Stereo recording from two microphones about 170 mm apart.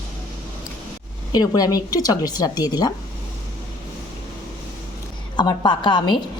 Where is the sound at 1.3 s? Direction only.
20° left (ahead or behind).